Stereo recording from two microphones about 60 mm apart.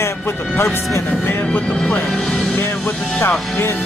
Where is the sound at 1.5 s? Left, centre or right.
Centre.